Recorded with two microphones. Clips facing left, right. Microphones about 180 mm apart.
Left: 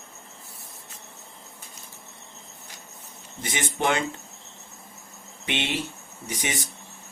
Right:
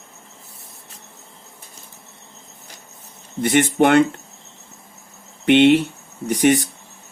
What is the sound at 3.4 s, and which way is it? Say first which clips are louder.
Speech: right 11 dB; 65° right (ahead or behind).